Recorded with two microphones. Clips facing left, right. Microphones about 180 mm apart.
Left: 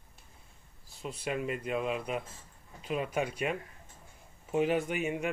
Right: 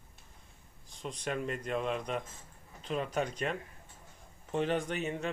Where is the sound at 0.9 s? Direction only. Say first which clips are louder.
Left 1 dB; 5° left (ahead or behind).